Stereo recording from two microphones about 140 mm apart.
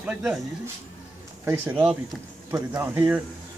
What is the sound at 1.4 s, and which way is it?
Speech, 15° right (ahead or behind).